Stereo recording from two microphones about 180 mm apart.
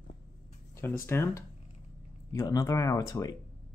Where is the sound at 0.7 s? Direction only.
15° left (ahead or behind).